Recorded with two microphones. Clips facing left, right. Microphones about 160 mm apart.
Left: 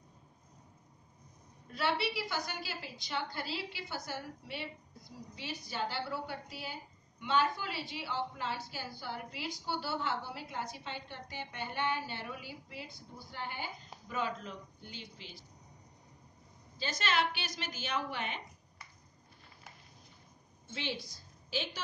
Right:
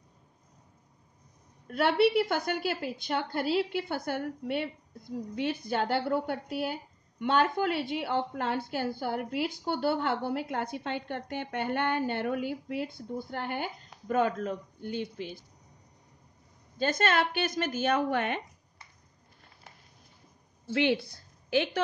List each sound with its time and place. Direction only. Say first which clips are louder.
1.7 s a woman's voice: right 10 dB; 55° right (ahead or behind)
16.7 s a woman's voice: right 7 dB; 55° right (ahead or behind)
20.7 s a woman's voice: right 13 dB; 65° right (ahead or behind)